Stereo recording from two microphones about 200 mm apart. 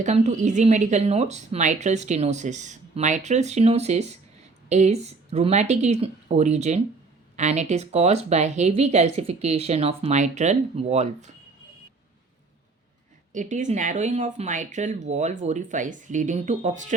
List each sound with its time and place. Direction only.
0.0 s a woman's voice: 35° right (ahead or behind)
13.3 s a woman's voice: 40° right (ahead or behind)